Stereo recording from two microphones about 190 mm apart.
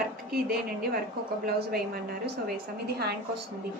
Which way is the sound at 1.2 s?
55° right (ahead or behind).